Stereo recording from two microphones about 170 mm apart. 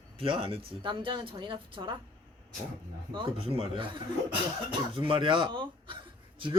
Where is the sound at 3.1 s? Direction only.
30° right (ahead or behind).